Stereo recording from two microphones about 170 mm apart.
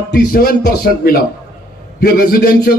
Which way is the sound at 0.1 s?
60° left (ahead or behind).